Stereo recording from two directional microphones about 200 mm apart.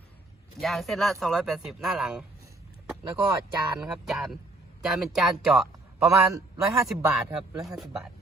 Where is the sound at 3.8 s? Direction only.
5° right (ahead or behind).